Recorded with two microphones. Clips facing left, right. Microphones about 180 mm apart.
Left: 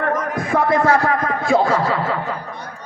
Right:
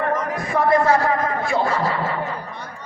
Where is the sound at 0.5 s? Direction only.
90° left.